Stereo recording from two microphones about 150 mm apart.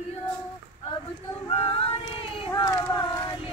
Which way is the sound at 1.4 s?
40° left (ahead or behind).